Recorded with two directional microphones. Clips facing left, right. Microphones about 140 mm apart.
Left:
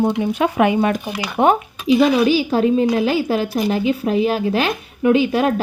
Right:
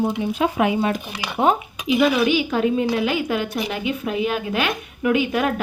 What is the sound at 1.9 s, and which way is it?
A woman's voice, 35° left (ahead or behind).